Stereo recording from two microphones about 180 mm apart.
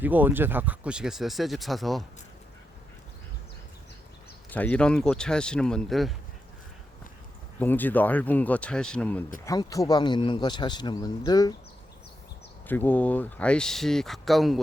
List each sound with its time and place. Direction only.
0.0 s speech: 10° right (ahead or behind)
4.5 s speech: 10° left (ahead or behind)
7.6 s speech: 10° left (ahead or behind)
9.4 s speech: 20° left (ahead or behind)
12.6 s speech: 10° left (ahead or behind)